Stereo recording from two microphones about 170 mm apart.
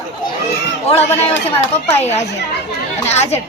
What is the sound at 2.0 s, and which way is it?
Speech, 40° left (ahead or behind).